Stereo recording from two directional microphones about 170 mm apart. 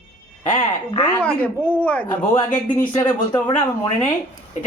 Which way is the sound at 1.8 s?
10° left (ahead or behind).